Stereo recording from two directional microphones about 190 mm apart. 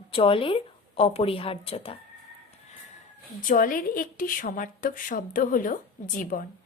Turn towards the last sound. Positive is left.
turn(degrees=45)  # may be behind; listen again after turning